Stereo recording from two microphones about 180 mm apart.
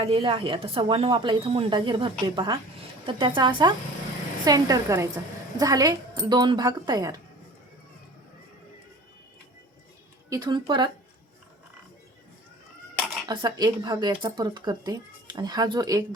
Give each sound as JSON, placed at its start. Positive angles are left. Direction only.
{"t": 0.0, "sound": "speech", "side_deg": -30}
{"t": 10.2, "sound": "speech", "side_deg": -20}
{"t": 13.2, "sound": "speech", "side_deg": -25}